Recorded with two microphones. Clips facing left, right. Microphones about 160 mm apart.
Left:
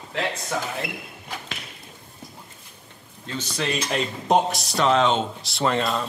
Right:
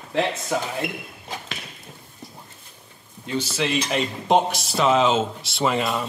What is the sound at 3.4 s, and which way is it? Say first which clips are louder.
Speech: right 3 dB; 5° right (ahead or behind).